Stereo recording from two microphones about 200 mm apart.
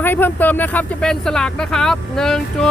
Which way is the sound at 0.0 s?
10° left (ahead or behind).